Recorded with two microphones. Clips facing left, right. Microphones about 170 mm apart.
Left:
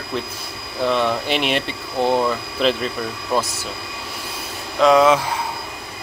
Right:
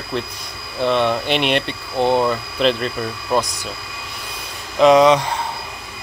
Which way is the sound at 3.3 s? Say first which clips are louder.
Right 2 dB; 15° right (ahead or behind).